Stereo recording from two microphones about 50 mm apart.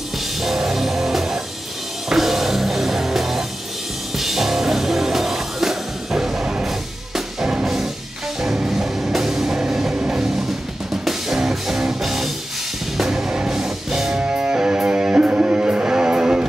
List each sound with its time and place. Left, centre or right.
0.4 s music: centre
14.2 s music: right